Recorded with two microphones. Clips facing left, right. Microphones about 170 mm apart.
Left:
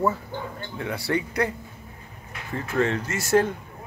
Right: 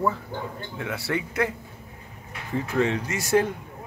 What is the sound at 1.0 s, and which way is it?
Speech, 35° left (ahead or behind).